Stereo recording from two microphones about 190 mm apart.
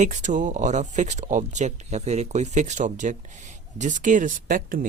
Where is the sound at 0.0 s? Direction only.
40° right (ahead or behind).